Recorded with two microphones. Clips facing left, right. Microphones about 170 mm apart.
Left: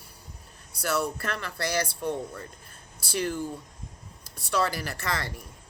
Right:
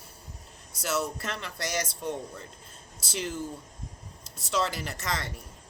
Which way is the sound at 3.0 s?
20° right (ahead or behind).